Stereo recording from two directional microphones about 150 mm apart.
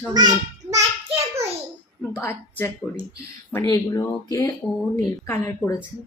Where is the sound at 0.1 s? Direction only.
25° right (ahead or behind).